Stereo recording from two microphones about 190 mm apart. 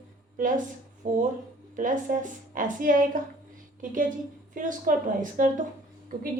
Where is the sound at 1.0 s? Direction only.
40° right (ahead or behind).